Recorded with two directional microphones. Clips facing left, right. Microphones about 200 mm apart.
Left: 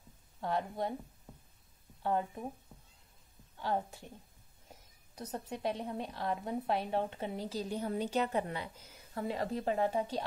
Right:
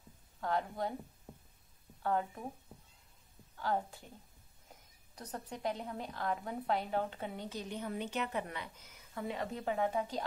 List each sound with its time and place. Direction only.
0.4 s a woman's voice: 25° left (ahead or behind)
1.3 s a sound: 10° right (ahead or behind)
2.0 s a woman's voice: 20° left (ahead or behind)
3.5 s a woman's voice: 20° left (ahead or behind)
5.1 s a woman's voice: 25° left (ahead or behind)